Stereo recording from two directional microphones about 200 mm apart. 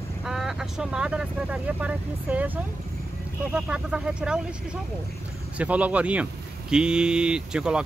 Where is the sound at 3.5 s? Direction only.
5° right (ahead or behind).